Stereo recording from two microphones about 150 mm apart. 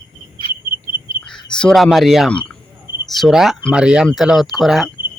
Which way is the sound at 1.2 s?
5° left (ahead or behind).